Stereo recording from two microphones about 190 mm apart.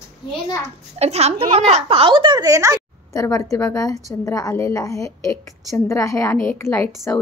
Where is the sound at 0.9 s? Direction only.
35° right (ahead or behind); by 3.1 s 15° right (ahead or behind).